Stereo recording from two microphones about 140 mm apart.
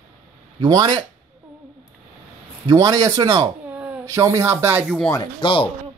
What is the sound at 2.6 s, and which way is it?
Speech, 25° right (ahead or behind).